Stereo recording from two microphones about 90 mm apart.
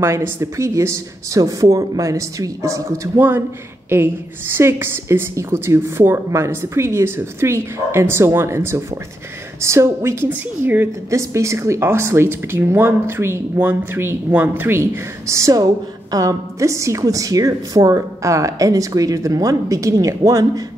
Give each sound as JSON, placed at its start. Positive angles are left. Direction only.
{"t": 0.0, "sound": "a woman's voice", "side_deg": -35}
{"t": 3.2, "sound": "a woman's voice", "side_deg": -25}